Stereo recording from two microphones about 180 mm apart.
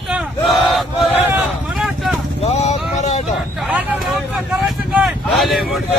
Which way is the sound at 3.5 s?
10° right (ahead or behind).